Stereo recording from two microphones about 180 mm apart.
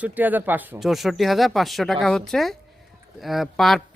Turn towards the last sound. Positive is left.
turn(degrees=0)  # may be behind; listen again after turning